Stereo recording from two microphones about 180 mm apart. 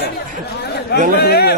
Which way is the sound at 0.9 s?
60° left (ahead or behind).